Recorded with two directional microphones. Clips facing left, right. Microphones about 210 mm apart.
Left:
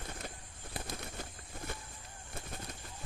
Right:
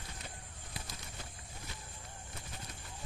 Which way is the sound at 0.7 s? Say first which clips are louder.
Left 7 dB; 55° left (ahead or behind).